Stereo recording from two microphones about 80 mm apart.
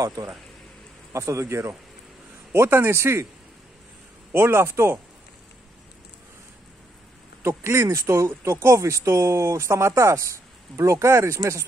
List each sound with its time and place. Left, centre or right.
0.0 s speech: right
4.3 s speech: right
7.4 s speech: right